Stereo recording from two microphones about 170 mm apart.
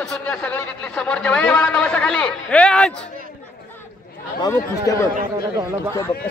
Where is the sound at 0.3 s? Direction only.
10° left (ahead or behind).